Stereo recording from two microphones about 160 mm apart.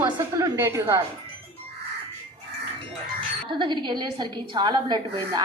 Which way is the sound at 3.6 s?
30° right (ahead or behind).